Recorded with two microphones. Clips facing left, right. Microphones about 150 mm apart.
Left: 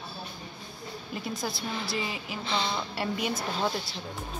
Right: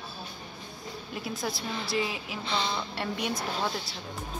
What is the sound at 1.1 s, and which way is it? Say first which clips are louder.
A woman's voice: even; centre (ahead or behind).